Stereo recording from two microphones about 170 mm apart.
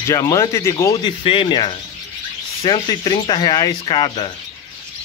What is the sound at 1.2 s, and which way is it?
Speech, 30° left (ahead or behind).